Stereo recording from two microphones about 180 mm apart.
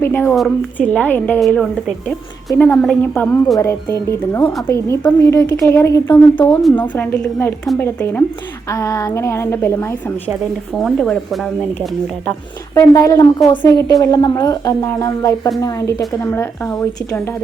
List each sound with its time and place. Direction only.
0.0 s a woman's voice: 10° left (ahead or behind)
6.4 s a woman's voice: centre (ahead or behind)
10.8 s speech: 5° left (ahead or behind)